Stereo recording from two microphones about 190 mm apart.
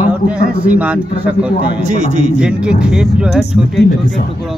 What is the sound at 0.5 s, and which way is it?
Speech, 5° right (ahead or behind).